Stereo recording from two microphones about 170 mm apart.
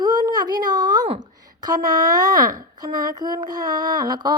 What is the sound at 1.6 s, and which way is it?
A woman's voice, 20° right (ahead or behind).